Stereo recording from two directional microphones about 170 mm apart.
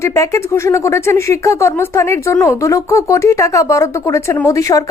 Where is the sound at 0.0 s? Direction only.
15° left (ahead or behind).